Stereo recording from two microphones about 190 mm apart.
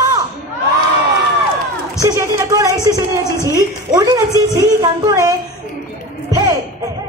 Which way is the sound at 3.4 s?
15° right (ahead or behind).